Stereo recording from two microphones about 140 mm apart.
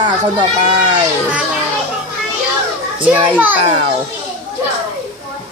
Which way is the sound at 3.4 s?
10° right (ahead or behind).